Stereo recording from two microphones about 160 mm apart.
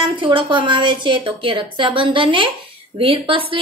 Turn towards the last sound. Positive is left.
turn(degrees=-35)  # may be behind; listen again after turning